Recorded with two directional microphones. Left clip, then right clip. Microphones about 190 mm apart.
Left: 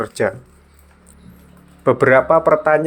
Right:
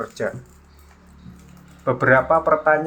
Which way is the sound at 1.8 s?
35° left (ahead or behind).